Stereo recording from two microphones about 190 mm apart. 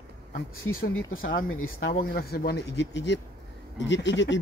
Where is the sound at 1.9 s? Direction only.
55° left (ahead or behind).